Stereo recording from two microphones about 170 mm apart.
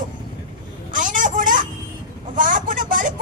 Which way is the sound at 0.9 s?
50° right (ahead or behind).